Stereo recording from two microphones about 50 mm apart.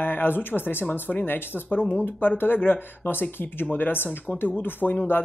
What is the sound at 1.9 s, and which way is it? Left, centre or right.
Speech, left.